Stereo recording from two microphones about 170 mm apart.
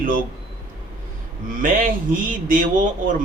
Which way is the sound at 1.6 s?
55° right (ahead or behind).